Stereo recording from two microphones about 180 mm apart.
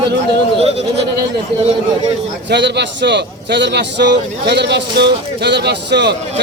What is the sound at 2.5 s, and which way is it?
A man's voice, 70° right (ahead or behind).